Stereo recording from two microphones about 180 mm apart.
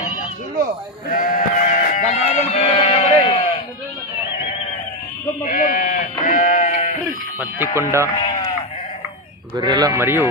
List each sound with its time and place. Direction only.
1.1 s sheep: 50° left (ahead or behind); by 3.4 s 30° left (ahead or behind)
5.4 s sheep: 50° left (ahead or behind)
7.3 s speech: 10° right (ahead or behind)
9.6 s speech: 20° right (ahead or behind)